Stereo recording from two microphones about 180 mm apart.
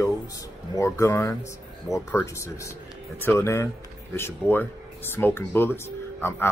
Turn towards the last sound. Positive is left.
turn(degrees=15)  # may be behind; listen again after turning